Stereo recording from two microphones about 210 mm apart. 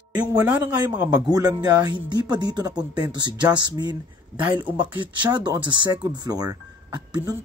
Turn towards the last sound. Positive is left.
turn(degrees=-20)  # may be behind; listen again after turning